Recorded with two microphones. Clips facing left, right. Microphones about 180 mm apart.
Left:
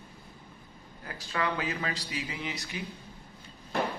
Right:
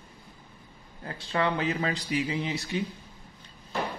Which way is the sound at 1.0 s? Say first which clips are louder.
Right 4 dB; 30° right (ahead or behind).